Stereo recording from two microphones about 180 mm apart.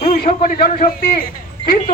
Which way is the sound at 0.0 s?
50° left (ahead or behind).